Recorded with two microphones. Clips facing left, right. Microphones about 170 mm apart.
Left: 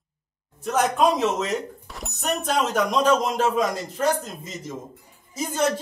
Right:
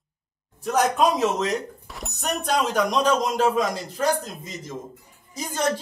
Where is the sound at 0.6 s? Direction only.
Centre (ahead or behind).